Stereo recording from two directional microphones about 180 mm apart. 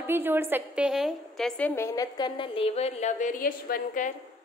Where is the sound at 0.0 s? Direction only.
10° right (ahead or behind).